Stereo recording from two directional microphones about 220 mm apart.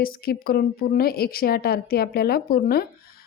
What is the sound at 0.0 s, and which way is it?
A woman's voice, 40° left (ahead or behind).